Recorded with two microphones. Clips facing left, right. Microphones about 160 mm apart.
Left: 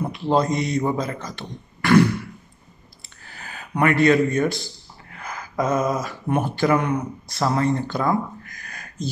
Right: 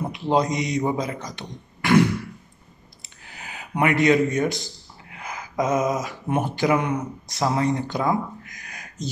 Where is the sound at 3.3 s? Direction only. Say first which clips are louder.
Even; 15° right (ahead or behind).